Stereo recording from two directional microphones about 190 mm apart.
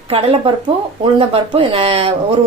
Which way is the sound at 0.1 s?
30° right (ahead or behind).